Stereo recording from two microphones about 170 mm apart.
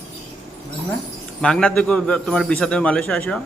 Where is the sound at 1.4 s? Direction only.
5° left (ahead or behind).